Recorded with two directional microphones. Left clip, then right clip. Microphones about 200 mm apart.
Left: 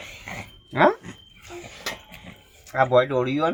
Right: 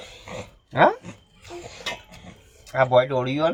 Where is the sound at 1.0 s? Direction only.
15° right (ahead or behind).